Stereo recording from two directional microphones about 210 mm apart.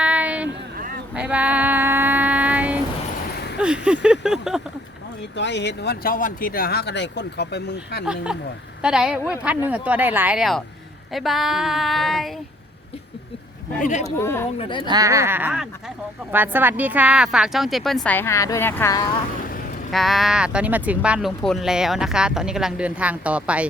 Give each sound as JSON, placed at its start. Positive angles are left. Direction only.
{"t": 0.0, "sound": "a sound", "side_deg": -5}
{"t": 3.3, "sound": "a sound", "side_deg": 50}
{"t": 3.6, "sound": "speech", "side_deg": -5}
{"t": 5.4, "sound": "speech", "side_deg": 55}
{"t": 8.0, "sound": "speech", "side_deg": -5}
{"t": 13.7, "sound": "speech", "side_deg": 35}
{"t": 14.2, "sound": "speech", "side_deg": 10}
{"t": 14.6, "sound": "speech", "side_deg": 25}
{"t": 14.8, "sound": "speech", "side_deg": -15}
{"t": 19.9, "sound": "speech", "side_deg": 0}